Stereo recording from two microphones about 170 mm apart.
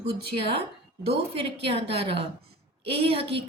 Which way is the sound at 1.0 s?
35° right (ahead or behind).